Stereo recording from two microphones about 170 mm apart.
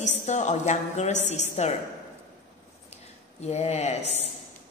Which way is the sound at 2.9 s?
40° left (ahead or behind).